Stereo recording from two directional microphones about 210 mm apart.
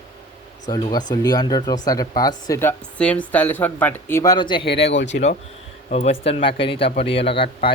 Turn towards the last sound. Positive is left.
turn(degrees=25)  # may be behind; listen again after turning